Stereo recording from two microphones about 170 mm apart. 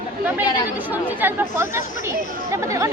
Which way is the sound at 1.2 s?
15° right (ahead or behind).